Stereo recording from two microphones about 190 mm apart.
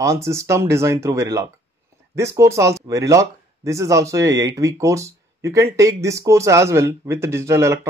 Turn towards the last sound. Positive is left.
turn(degrees=-15)  # may be behind; listen again after turning